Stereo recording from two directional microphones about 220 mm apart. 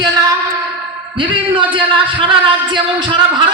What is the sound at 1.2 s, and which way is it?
Speech, 25° right (ahead or behind).